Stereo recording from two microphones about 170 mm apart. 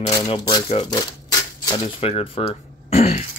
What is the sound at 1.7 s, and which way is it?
Speech, 35° left (ahead or behind).